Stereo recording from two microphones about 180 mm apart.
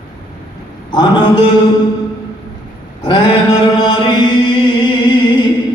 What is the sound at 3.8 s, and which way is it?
Chant, 25° left (ahead or behind).